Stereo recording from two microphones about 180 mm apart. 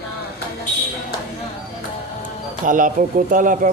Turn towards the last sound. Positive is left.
turn(degrees=-45)  # may be behind; listen again after turning